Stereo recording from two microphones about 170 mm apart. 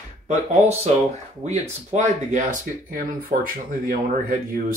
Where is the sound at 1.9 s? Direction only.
45° right (ahead or behind).